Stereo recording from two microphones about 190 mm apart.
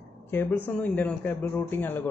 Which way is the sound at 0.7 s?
5° left (ahead or behind).